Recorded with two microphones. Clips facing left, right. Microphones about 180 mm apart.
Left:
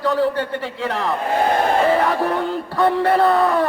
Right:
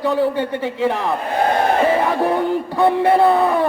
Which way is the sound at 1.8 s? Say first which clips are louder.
Right 1 dB; 15° right (ahead or behind).